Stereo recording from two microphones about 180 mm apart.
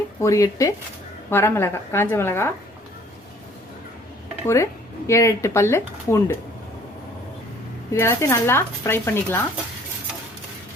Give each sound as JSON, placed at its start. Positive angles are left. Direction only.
{"t": 0.2, "sound": "speech", "side_deg": 15}
{"t": 4.4, "sound": "speech", "side_deg": 15}
{"t": 7.9, "sound": "speech", "side_deg": 15}